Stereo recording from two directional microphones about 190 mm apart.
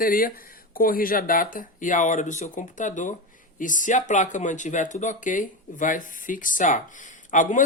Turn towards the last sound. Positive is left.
turn(degrees=40)  # may be behind; listen again after turning